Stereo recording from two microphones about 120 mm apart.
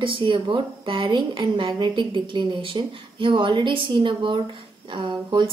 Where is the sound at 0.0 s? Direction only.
45° right (ahead or behind).